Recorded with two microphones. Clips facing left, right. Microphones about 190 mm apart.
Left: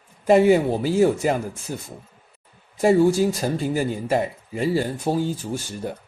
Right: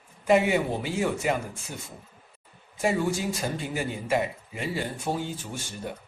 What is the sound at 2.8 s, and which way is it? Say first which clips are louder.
Speech: left 9 dB; 40° left (ahead or behind).